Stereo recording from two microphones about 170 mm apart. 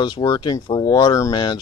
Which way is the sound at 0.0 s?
25° left (ahead or behind).